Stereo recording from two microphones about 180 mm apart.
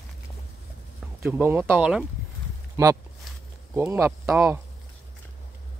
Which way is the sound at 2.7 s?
15° right (ahead or behind).